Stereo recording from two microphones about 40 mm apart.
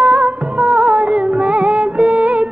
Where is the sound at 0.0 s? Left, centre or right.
Right.